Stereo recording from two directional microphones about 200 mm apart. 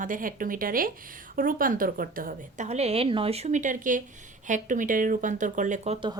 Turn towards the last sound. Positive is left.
turn(degrees=-30)  # may be behind; listen again after turning